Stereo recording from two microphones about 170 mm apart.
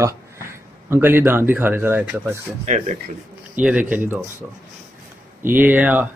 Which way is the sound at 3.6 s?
5° right (ahead or behind).